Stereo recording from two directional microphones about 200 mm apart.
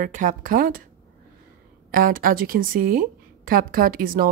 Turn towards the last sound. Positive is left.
turn(degrees=-45)  # may be behind; listen again after turning